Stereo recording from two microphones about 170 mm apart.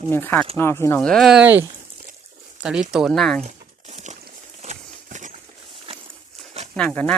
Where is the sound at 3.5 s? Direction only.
45° right (ahead or behind).